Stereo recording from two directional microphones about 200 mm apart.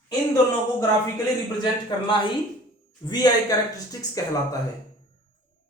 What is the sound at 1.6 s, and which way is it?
Speech, 20° left (ahead or behind).